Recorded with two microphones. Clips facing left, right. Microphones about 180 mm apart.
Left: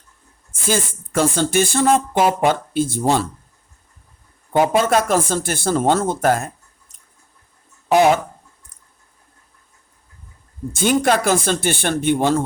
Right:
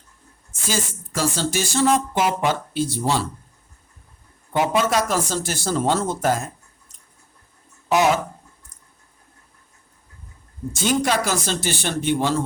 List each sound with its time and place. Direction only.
0.7 s speech: 55° left (ahead or behind)
4.8 s speech: 55° left (ahead or behind)
7.9 s speech: 55° left (ahead or behind)
10.7 s speech: 55° left (ahead or behind)